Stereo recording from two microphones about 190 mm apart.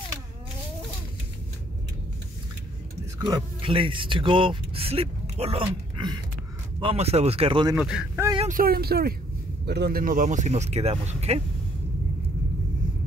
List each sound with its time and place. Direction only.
3.2 s speech: 20° right (ahead or behind)
7.7 s speech: 5° right (ahead or behind)
8.4 s speech: 45° right (ahead or behind)